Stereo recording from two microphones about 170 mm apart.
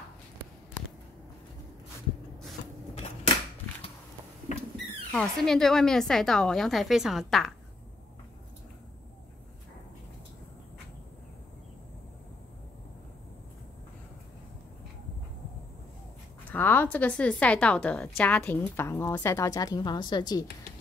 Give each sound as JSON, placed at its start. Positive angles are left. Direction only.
{"t": 5.1, "sound": "a woman's voice", "side_deg": 5}
{"t": 16.5, "sound": "a woman's voice", "side_deg": 10}